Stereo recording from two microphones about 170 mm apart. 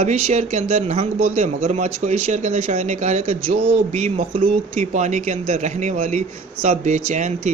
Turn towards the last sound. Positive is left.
turn(degrees=-45)  # may be behind; listen again after turning